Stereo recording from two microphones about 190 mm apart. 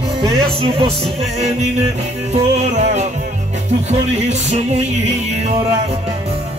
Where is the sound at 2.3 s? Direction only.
35° right (ahead or behind).